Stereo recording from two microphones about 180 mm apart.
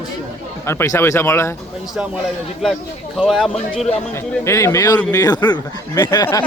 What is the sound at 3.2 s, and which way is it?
Speech, centre (ahead or behind).